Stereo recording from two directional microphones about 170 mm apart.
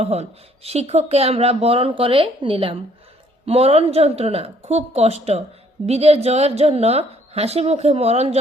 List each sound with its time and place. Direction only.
0.0 s speech: 35° right (ahead or behind)